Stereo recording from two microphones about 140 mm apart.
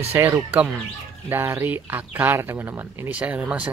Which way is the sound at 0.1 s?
15° right (ahead or behind).